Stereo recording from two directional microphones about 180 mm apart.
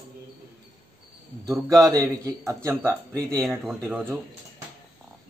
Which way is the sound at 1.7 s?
20° right (ahead or behind).